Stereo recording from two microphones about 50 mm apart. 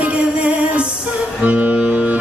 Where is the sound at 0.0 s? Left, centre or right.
Right.